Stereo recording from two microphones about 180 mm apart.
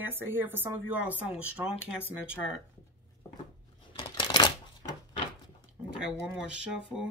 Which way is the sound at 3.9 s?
25° left (ahead or behind).